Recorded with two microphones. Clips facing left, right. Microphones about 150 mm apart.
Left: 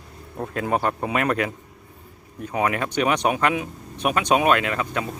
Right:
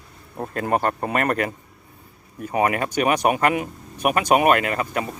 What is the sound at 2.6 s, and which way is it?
Speech, 55° right (ahead or behind).